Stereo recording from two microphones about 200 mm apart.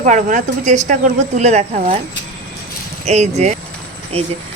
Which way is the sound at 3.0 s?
35° right (ahead or behind).